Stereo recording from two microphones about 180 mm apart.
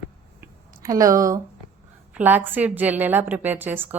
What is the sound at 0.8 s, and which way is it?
A woman's voice, 20° right (ahead or behind).